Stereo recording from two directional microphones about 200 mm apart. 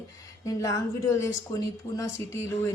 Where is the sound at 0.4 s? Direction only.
15° left (ahead or behind).